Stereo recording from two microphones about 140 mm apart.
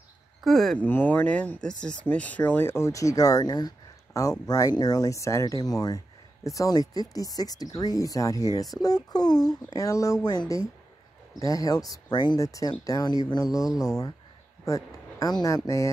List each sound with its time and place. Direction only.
0.4 s speech: centre (ahead or behind)
0.8 s speech: 15° left (ahead or behind)
15.1 s speech: 25° left (ahead or behind)